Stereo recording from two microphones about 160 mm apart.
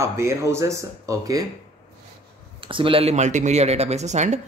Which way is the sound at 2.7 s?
35° right (ahead or behind).